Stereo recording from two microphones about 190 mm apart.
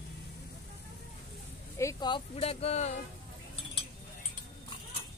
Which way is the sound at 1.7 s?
20° left (ahead or behind).